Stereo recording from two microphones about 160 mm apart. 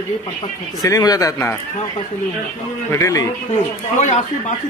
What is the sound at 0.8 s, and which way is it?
Speech, 20° left (ahead or behind).